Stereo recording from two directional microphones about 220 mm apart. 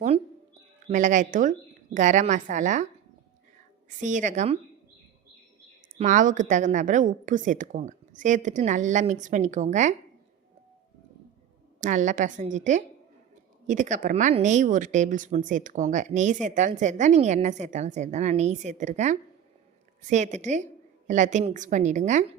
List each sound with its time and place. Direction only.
0.9 s a woman's voice: 35° right (ahead or behind)
3.8 s a woman's voice: 35° right (ahead or behind)
6.0 s a woman's voice: 35° right (ahead or behind)
11.8 s a woman's voice: 35° right (ahead or behind)